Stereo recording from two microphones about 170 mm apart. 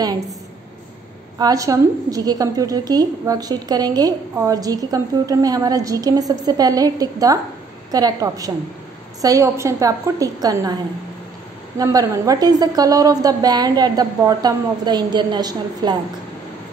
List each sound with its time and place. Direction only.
1.4 s a woman's voice: 20° right (ahead or behind)
11.8 s a woman's voice: 20° right (ahead or behind)